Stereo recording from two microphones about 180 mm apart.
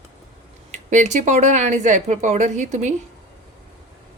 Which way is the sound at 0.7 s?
40° right (ahead or behind).